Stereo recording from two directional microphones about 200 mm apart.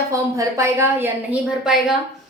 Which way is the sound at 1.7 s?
Centre (ahead or behind).